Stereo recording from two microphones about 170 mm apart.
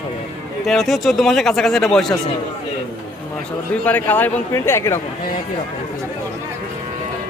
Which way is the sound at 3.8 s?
10° left (ahead or behind).